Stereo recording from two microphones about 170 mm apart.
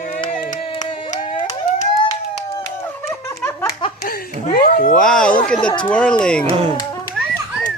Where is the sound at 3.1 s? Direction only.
15° left (ahead or behind).